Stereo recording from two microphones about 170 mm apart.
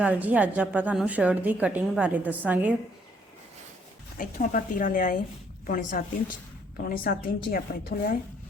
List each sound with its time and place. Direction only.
0.0 s a woman's voice: 10° right (ahead or behind)
4.2 s a woman's voice: 50° left (ahead or behind)